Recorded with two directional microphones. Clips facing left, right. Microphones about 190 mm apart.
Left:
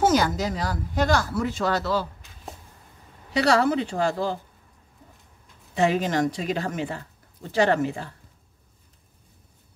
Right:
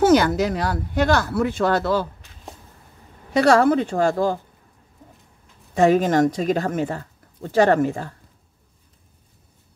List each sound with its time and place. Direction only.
0.0 s speech: 65° right (ahead or behind)
3.3 s speech: 50° right (ahead or behind)
5.8 s speech: 45° right (ahead or behind)